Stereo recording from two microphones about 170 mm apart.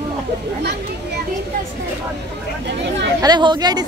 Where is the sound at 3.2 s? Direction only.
25° right (ahead or behind).